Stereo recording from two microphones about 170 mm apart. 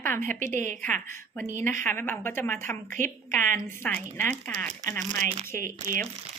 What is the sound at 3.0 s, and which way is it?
Speech, 50° right (ahead or behind).